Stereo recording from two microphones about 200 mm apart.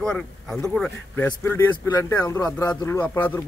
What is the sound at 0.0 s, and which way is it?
Speech, 5° left (ahead or behind).